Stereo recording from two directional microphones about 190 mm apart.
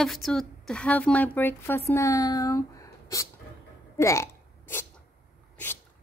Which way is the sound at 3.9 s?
15° left (ahead or behind).